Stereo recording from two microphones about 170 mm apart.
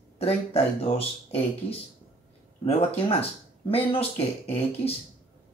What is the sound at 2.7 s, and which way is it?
Speech, 35° left (ahead or behind).